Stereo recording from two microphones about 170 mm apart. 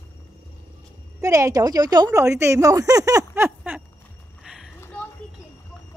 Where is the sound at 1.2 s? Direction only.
20° right (ahead or behind).